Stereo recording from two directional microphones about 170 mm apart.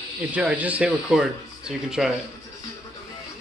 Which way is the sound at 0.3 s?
10° right (ahead or behind).